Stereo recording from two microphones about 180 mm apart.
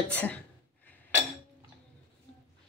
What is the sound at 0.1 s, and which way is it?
Speech, 10° left (ahead or behind).